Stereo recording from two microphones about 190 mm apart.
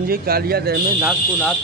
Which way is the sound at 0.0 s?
50° right (ahead or behind).